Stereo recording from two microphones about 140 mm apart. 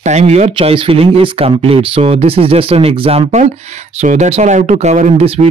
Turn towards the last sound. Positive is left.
turn(degrees=-50)  # may be behind; listen again after turning